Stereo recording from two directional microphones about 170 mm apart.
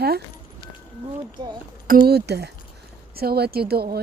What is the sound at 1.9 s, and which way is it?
Speech, 65° right (ahead or behind).